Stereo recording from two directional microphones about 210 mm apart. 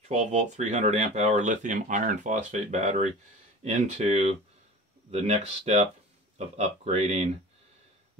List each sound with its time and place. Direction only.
0.1 s speech: 35° right (ahead or behind)